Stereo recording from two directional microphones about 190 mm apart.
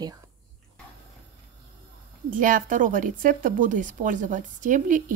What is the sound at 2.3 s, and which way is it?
A woman's voice, 45° right (ahead or behind).